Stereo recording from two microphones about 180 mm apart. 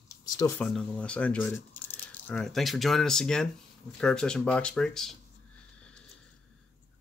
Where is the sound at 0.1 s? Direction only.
20° left (ahead or behind).